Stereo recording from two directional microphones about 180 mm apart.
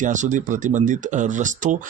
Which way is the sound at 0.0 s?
45° right (ahead or behind).